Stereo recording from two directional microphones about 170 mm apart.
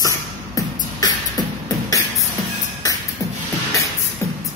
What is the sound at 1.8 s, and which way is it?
Music, 20° left (ahead or behind).